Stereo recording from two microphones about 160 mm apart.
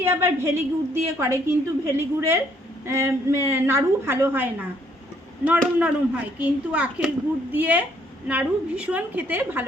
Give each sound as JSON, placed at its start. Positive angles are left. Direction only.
{"t": 0.0, "sound": "a woman's voice", "side_deg": -15}